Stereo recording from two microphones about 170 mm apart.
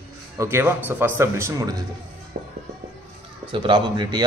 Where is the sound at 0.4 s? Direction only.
15° right (ahead or behind).